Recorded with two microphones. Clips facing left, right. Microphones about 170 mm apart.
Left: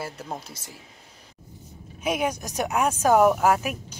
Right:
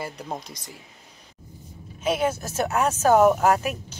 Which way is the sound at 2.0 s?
15° left (ahead or behind).